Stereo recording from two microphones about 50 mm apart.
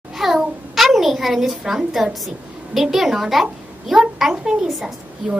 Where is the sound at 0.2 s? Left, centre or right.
Centre.